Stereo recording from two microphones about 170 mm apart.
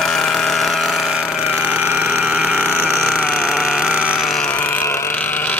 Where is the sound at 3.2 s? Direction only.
5° left (ahead or behind).